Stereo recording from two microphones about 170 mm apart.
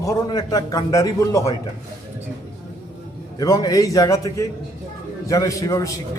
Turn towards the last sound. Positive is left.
turn(degrees=20)  # may be behind; listen again after turning